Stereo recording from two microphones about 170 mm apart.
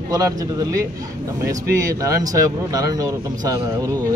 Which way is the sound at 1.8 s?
20° right (ahead or behind).